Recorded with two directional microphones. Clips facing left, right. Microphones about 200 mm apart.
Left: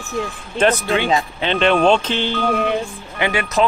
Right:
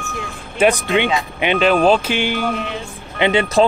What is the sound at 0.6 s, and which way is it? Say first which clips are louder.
Speech: right 2 dB; 15° right (ahead or behind).